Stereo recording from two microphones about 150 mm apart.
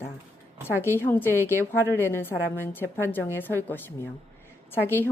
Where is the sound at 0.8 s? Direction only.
15° left (ahead or behind).